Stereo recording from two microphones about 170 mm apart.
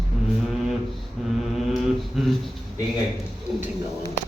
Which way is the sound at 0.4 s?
Centre (ahead or behind).